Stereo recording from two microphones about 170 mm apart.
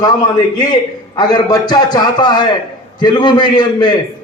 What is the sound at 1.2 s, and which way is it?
A man's voice, 25° left (ahead or behind).